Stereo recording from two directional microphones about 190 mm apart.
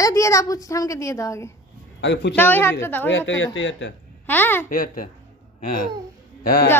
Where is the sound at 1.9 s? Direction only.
70° left (ahead or behind).